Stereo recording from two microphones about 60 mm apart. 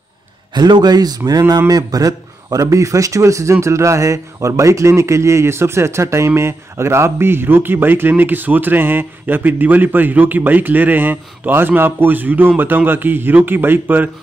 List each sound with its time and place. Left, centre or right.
0.9 s a man's voice: right